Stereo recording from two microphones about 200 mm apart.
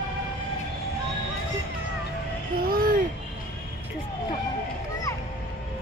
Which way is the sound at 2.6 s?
45° right (ahead or behind).